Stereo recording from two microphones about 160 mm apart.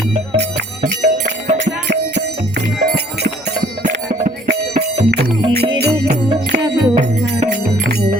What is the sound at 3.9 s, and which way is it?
Music, 75° right (ahead or behind).